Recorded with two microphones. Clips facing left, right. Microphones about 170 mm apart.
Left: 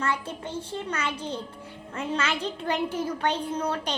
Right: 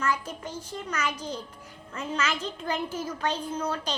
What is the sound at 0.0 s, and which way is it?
A child's voice, 30° left (ahead or behind).